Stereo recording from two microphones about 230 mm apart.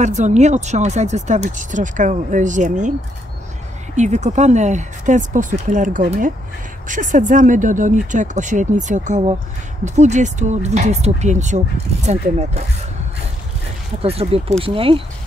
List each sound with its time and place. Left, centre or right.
0.0 s speech: right
3.9 s speech: right
14.0 s speech: right